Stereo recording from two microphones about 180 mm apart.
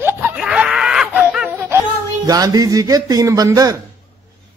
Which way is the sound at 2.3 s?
20° right (ahead or behind).